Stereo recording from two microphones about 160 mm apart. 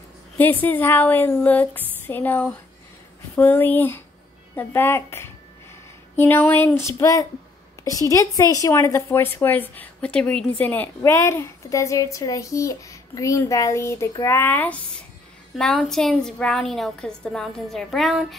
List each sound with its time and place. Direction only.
0.4 s a woman's voice: 10° left (ahead or behind)